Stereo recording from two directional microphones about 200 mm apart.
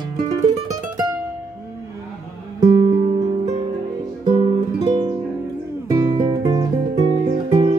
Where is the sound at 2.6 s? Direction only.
25° right (ahead or behind).